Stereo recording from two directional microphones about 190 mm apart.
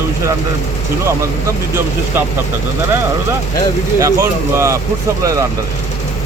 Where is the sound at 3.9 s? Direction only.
15° right (ahead or behind).